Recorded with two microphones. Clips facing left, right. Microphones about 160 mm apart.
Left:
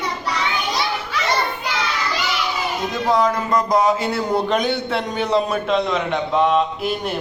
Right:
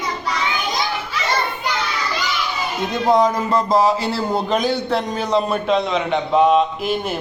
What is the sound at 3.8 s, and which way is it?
A man's voice, centre (ahead or behind).